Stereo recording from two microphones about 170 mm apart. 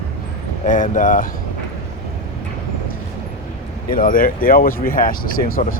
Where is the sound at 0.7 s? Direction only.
50° left (ahead or behind).